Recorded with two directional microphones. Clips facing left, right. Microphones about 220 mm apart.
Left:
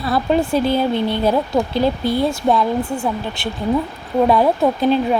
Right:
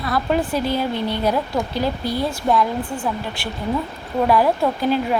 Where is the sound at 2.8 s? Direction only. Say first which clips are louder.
Left 4 dB; 10° left (ahead or behind).